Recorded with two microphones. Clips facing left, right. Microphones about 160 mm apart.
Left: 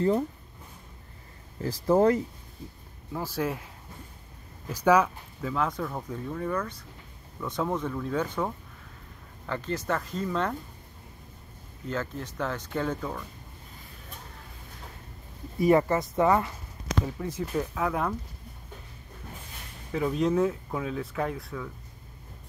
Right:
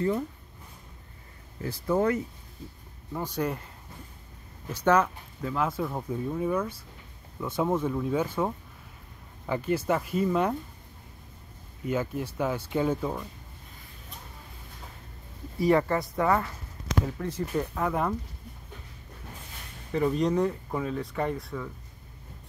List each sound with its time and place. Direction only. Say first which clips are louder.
1.6 s speech: left 4 dB; 35° left (ahead or behind)
3.1 s speech: even; 5° left (ahead or behind)
11.8 s speech: right 4 dB; 10° right (ahead or behind)
15.6 s speech: left 1 dB; 20° left (ahead or behind); by 18.1 s centre (ahead or behind)
19.9 s speech: right 1 dB; centre (ahead or behind)